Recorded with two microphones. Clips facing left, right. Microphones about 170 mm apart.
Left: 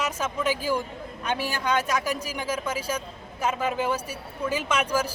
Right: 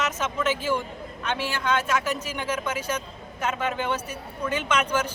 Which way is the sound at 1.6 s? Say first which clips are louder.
Right 1 dB; 15° left (ahead or behind).